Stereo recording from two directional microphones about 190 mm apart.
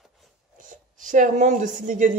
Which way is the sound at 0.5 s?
45° right (ahead or behind).